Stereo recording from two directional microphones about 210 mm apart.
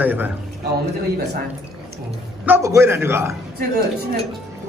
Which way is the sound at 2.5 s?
15° right (ahead or behind).